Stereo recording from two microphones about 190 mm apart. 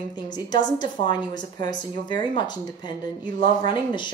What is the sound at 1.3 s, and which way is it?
Speech, 20° left (ahead or behind).